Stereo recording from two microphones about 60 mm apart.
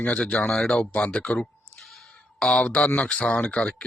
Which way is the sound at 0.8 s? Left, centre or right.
Left.